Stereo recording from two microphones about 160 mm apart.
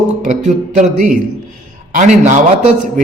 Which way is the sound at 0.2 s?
50° right (ahead or behind).